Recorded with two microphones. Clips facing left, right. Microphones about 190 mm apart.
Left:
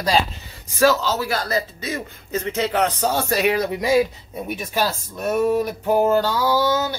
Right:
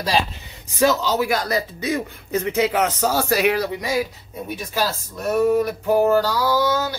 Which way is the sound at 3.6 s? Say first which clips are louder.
Left 5 dB; 25° left (ahead or behind).